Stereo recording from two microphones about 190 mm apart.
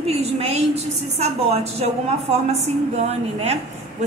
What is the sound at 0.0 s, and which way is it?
A woman's voice, 30° right (ahead or behind).